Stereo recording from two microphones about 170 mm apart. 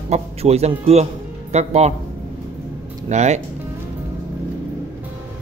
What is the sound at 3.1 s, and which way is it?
Speech, 40° right (ahead or behind).